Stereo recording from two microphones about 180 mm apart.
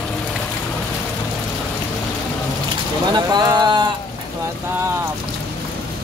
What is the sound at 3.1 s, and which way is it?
Bird, 20° right (ahead or behind).